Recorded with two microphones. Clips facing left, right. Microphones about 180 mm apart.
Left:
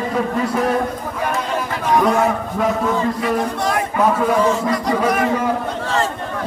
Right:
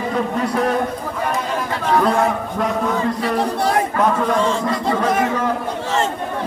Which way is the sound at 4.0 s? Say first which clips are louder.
Left 4 dB; 5° left (ahead or behind).